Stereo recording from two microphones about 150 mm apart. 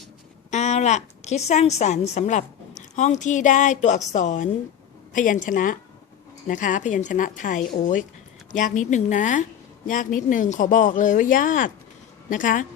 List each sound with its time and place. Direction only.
0.5 s a woman's voice: 50° left (ahead or behind)